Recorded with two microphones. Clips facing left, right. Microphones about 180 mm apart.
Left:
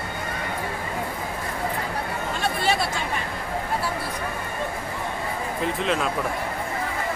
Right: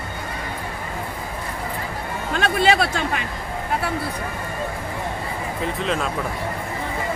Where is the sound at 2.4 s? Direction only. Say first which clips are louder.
Right 6 dB; 70° right (ahead or behind).